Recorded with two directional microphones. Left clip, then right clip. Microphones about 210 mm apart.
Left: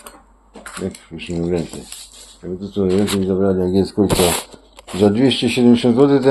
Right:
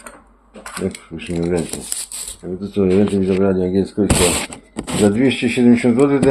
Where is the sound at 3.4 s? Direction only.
15° left (ahead or behind).